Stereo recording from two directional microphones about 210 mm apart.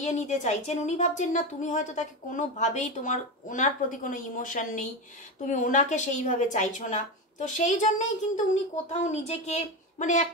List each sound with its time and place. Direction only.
0.0 s a woman's voice: 35° left (ahead or behind)